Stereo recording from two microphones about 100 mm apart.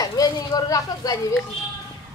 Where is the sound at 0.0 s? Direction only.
40° left (ahead or behind).